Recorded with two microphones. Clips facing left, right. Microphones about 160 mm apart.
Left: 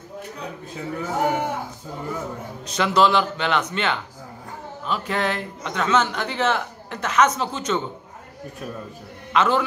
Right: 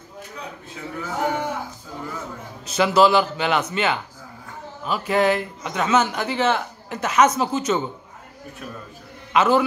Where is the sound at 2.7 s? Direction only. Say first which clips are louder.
Right 2 dB; 5° right (ahead or behind).